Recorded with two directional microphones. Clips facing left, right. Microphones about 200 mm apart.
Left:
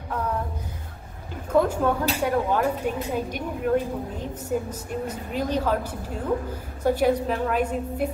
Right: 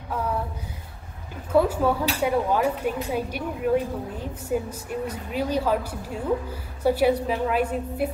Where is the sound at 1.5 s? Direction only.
5° right (ahead or behind).